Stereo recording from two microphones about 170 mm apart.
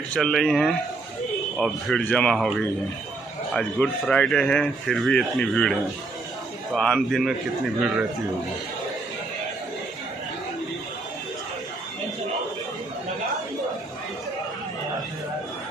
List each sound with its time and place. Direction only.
0.1 s speech: 5° left (ahead or behind)